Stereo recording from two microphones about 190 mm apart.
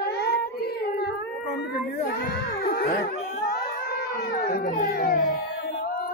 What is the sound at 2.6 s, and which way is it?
Dog, 50° left (ahead or behind).